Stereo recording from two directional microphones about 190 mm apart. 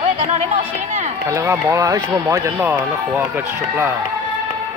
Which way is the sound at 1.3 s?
15° right (ahead or behind).